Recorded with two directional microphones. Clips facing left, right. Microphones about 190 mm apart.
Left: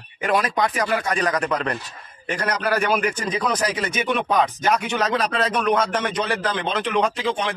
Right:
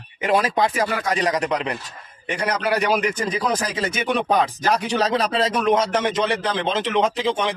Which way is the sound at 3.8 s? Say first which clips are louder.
Right 1 dB; 30° right (ahead or behind).